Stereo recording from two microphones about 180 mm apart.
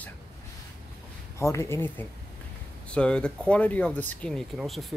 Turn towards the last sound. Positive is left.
turn(degrees=0)  # may be behind; listen again after turning